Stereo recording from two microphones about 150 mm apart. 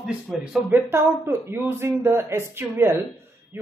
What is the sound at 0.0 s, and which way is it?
Speech, 5° right (ahead or behind).